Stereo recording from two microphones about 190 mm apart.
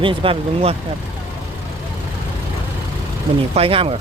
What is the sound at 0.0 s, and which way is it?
Speech, 25° right (ahead or behind).